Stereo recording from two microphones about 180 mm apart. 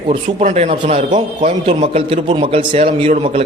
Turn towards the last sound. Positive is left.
turn(degrees=-30)  # may be behind; listen again after turning